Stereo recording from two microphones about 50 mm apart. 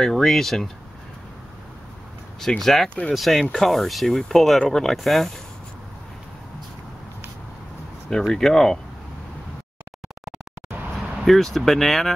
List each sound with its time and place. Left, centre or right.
0.0 s speech: centre
2.6 s speech: centre
2.9 s speech: left
3.2 s speech: centre
8.3 s speech: centre
10.9 s speech: centre